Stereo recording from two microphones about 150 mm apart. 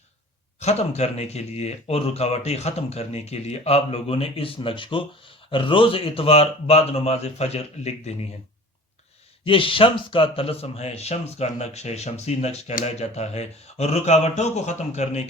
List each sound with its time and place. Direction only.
0.6 s speech: 45° left (ahead or behind)
9.4 s speech: 35° left (ahead or behind)